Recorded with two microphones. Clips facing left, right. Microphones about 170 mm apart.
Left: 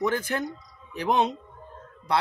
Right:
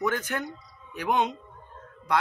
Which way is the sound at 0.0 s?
30° left (ahead or behind).